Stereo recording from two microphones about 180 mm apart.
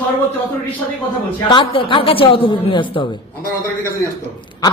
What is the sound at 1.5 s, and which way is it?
Speech, 25° left (ahead or behind).